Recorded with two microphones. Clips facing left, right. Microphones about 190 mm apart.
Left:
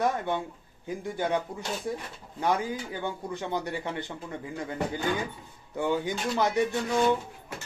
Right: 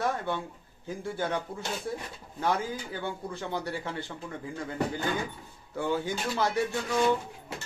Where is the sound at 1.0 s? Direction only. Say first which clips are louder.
Left 3 dB; 15° left (ahead or behind).